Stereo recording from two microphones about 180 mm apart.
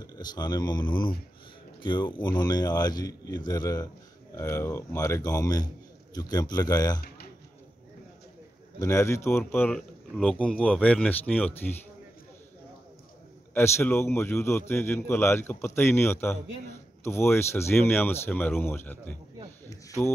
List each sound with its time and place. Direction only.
0.0 s a man's voice: 20° left (ahead or behind)
8.7 s speech: 15° left (ahead or behind)
13.5 s speech: 10° left (ahead or behind)